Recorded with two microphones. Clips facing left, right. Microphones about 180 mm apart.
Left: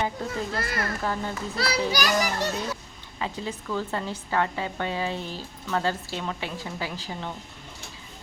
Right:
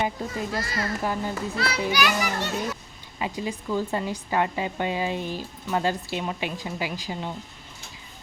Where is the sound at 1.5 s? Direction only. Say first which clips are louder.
Left 2 dB; 35° left (ahead or behind).